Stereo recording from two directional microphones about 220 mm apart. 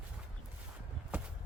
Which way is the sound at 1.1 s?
5° right (ahead or behind).